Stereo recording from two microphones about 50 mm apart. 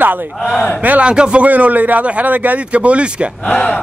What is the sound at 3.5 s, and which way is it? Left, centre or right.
Speech, left.